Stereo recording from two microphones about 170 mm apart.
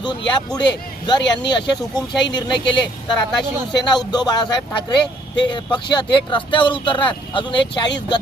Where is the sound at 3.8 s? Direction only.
25° left (ahead or behind).